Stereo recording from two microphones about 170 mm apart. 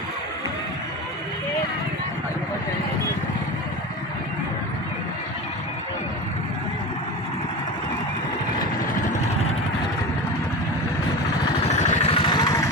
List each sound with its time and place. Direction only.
11.6 s vehicle: 35° left (ahead or behind)